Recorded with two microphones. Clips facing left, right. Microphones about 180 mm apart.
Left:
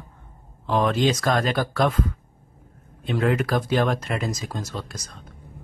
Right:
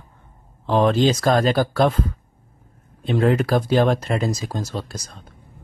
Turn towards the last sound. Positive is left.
turn(degrees=-30)  # may be behind; listen again after turning